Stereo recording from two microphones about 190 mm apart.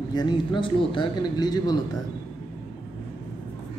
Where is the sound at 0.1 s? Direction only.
25° left (ahead or behind).